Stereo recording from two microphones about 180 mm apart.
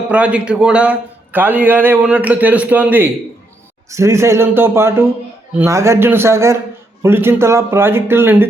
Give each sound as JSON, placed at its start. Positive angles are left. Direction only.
{"t": 0.1, "sound": "a man's voice", "side_deg": -5}